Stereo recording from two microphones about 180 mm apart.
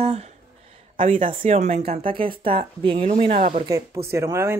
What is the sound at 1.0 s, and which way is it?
Speech, 45° right (ahead or behind).